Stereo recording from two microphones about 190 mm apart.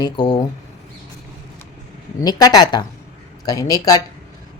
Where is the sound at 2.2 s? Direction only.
20° left (ahead or behind).